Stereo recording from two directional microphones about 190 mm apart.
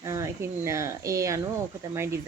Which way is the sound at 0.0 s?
15° right (ahead or behind).